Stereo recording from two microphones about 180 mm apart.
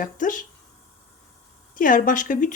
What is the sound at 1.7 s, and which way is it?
Speech, 50° left (ahead or behind).